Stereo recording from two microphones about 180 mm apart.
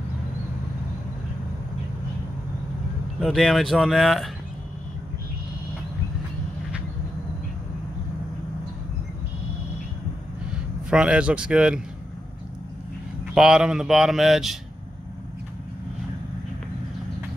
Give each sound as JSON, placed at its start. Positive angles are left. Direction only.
{"t": 3.2, "sound": "speech", "side_deg": 0}
{"t": 10.9, "sound": "speech", "side_deg": -5}
{"t": 13.3, "sound": "speech", "side_deg": -5}